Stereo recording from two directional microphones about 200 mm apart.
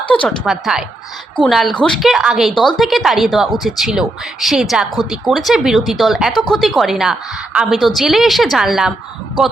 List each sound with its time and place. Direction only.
0.1 s speech: 5° left (ahead or behind)